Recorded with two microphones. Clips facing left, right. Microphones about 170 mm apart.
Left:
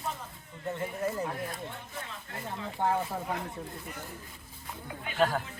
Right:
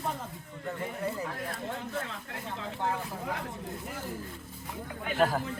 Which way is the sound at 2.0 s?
80° right.